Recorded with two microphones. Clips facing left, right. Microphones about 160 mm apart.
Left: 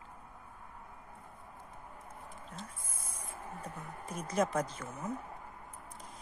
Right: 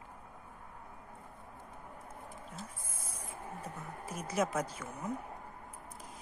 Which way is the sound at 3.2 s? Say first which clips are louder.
Even; 5° right (ahead or behind).